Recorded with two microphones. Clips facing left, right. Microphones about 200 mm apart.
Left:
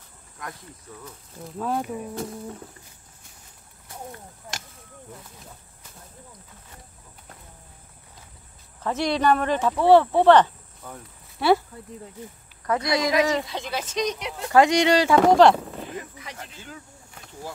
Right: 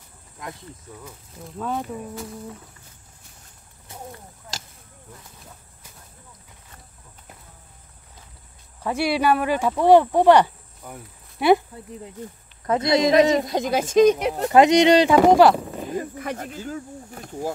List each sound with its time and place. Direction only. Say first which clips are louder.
1.0 s speech: even; centre (ahead or behind)
8.8 s speech: right 1 dB; 10° right (ahead or behind)
12.6 s speech: right 5 dB; 25° right (ahead or behind)
13.4 s speech: right 8 dB; 45° right (ahead or behind)
14.5 s speech: right 3 dB; 20° right (ahead or behind)
15.4 s a sound: right 1 dB; 5° right (ahead or behind)
15.9 s speech: right 9 dB; 45° right (ahead or behind)